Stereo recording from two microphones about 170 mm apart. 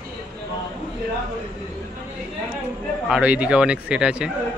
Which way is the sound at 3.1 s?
10° right (ahead or behind).